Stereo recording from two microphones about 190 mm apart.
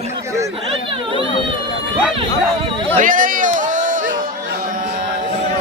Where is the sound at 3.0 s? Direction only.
45° right (ahead or behind).